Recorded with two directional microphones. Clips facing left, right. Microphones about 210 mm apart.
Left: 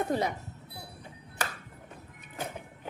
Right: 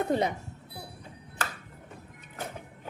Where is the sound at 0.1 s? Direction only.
25° right (ahead or behind).